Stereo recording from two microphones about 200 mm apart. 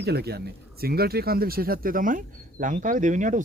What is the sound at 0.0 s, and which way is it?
Speech, 55° right (ahead or behind).